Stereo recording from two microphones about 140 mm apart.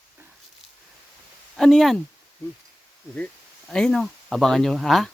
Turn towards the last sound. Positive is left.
turn(degrees=0)  # may be behind; listen again after turning